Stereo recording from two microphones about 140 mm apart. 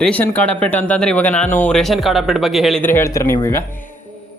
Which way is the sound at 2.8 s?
20° left (ahead or behind).